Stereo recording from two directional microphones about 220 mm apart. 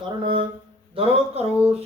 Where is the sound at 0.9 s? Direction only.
25° right (ahead or behind).